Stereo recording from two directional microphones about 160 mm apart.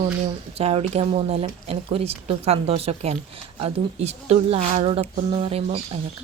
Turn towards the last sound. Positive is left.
turn(degrees=-35)  # may be behind; listen again after turning